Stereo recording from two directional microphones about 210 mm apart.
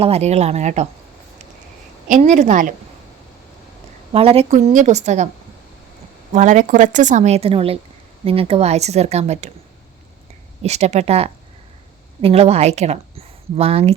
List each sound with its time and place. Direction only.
0.0 s a woman's voice: 30° right (ahead or behind)
2.0 s a woman's voice: 35° right (ahead or behind)
4.1 s a woman's voice: 25° right (ahead or behind)
6.3 s a woman's voice: 35° right (ahead or behind)
10.6 s a woman's voice: 30° right (ahead or behind)